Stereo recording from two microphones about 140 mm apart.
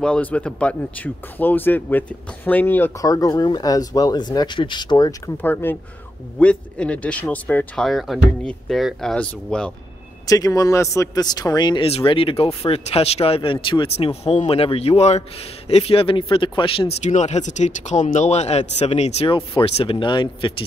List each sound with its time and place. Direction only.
0.0 s speech: 10° left (ahead or behind); by 5.3 s 25° left (ahead or behind)
5.4 s speech: 15° left (ahead or behind)
10.2 s a man's voice: 25° left (ahead or behind)
17.0 s a man's voice: 55° left (ahead or behind); by 20.6 s 35° left (ahead or behind)